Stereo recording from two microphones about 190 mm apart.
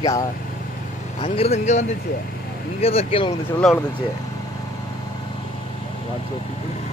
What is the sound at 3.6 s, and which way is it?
Speech, centre (ahead or behind).